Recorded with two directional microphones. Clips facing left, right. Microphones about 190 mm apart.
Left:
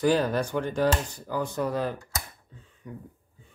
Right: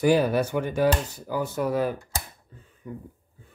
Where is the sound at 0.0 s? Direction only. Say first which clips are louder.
Right 3 dB; 10° right (ahead or behind).